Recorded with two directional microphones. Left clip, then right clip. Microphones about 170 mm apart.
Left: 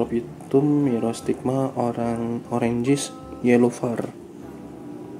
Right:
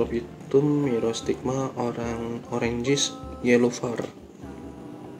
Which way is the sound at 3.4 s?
70° left (ahead or behind).